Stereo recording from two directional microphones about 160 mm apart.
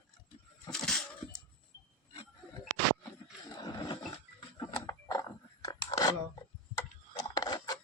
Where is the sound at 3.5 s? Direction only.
25° left (ahead or behind).